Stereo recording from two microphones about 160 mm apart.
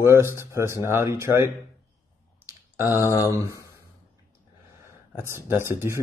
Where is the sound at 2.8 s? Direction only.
20° left (ahead or behind).